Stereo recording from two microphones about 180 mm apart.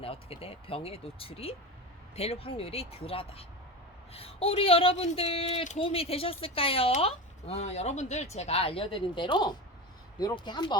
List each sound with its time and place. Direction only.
0.0 s speech: 30° left (ahead or behind)